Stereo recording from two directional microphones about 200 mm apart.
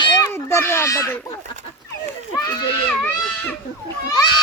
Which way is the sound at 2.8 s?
5° left (ahead or behind).